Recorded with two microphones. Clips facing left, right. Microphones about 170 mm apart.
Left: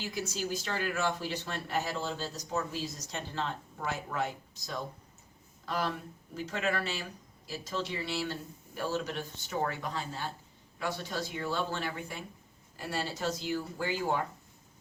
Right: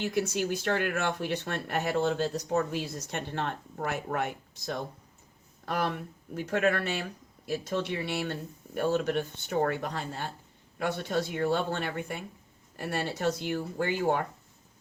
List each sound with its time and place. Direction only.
0.0 s speech: 60° right (ahead or behind)